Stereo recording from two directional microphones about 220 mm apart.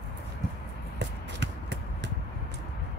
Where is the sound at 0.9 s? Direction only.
50° right (ahead or behind).